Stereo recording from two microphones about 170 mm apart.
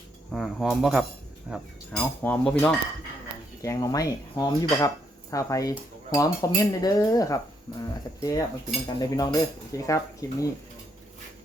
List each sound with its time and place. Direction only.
0.3 s speech: centre (ahead or behind)
2.2 s speech: 10° left (ahead or behind)
3.6 s dishes: 20° left (ahead or behind)